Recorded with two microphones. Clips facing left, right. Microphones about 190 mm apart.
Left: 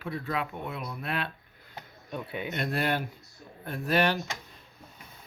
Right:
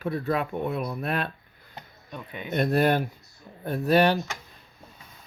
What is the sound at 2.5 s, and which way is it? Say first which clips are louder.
Speech: right 8 dB; 45° right (ahead or behind).